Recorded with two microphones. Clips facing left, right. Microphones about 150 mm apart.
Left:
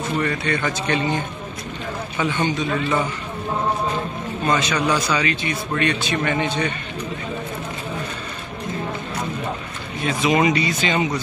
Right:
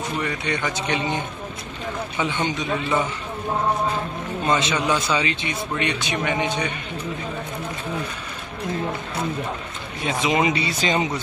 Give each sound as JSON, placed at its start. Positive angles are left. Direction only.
{"t": 0.7, "sound": "a man's voice", "side_deg": -15}
{"t": 4.5, "sound": "a man's voice", "side_deg": -25}
{"t": 10.0, "sound": "speech", "side_deg": -20}
{"t": 10.8, "sound": "speech", "side_deg": -35}